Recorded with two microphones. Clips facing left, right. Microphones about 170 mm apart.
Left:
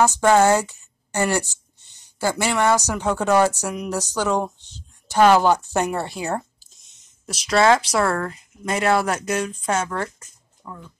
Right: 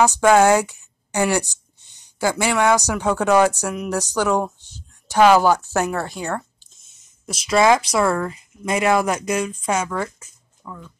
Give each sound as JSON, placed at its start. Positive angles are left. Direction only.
{"t": 0.0, "sound": "a woman's voice", "side_deg": -10}
{"t": 6.2, "sound": "a sound", "side_deg": 35}
{"t": 6.7, "sound": "speech", "side_deg": -5}